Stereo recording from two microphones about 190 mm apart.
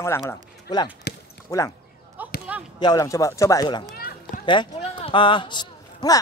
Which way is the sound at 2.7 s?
20° left (ahead or behind).